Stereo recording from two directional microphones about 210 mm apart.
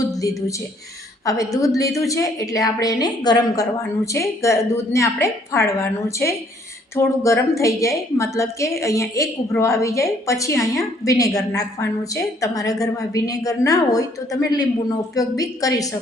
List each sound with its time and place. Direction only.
0.1 s a woman's voice: 15° left (ahead or behind)